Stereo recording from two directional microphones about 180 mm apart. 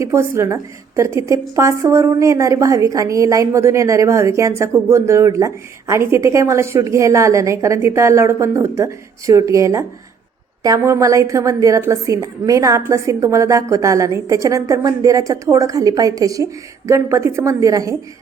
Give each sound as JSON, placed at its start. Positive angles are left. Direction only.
{"t": 0.0, "sound": "a woman's voice", "side_deg": -15}